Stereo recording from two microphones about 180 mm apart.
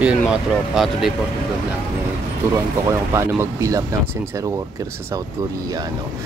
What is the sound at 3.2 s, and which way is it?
Speech, 15° right (ahead or behind).